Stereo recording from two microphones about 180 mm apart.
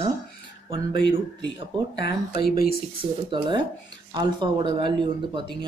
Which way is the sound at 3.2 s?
25° right (ahead or behind).